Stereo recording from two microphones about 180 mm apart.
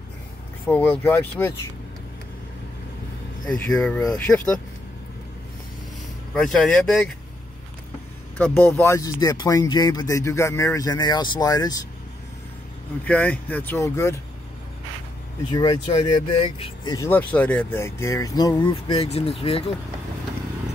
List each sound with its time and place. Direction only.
0.7 s speech: 10° left (ahead or behind)
3.4 s speech: 5° left (ahead or behind)
6.3 s speech: 5° left (ahead or behind)
8.4 s speech: 10° left (ahead or behind)
13.0 s speech: 5° left (ahead or behind)
15.5 s speech: 25° left (ahead or behind)
16.9 s speech: 15° left (ahead or behind); by 19.3 s 35° left (ahead or behind)